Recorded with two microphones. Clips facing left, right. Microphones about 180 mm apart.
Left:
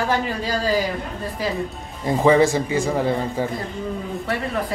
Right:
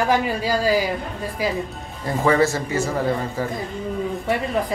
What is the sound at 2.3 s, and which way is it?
Speech, 15° left (ahead or behind).